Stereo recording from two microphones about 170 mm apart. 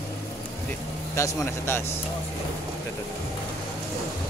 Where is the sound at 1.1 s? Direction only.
15° left (ahead or behind).